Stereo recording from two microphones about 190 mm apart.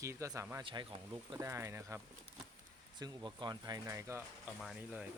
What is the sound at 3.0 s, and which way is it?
Speech, 20° right (ahead or behind).